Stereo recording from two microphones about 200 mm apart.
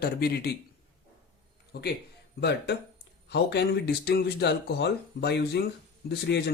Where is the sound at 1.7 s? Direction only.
55° left (ahead or behind).